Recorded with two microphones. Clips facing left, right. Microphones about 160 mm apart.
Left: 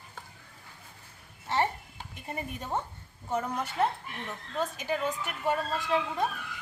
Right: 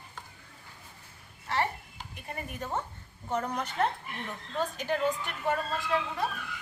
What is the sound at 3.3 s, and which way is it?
A woman's voice, 5° left (ahead or behind).